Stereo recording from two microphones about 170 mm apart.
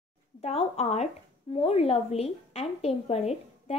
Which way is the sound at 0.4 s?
35° left (ahead or behind).